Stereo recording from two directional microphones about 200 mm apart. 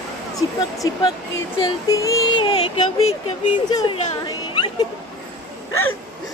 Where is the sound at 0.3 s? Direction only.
15° left (ahead or behind).